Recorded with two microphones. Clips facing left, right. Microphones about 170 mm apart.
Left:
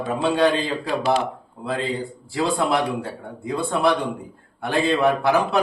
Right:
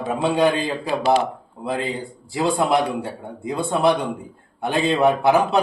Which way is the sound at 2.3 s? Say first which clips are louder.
Right 2 dB; 20° right (ahead or behind).